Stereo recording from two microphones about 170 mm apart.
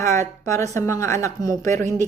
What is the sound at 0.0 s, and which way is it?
Speech, 15° left (ahead or behind).